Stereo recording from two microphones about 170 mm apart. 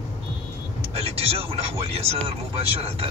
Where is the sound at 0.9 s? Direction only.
35° right (ahead or behind).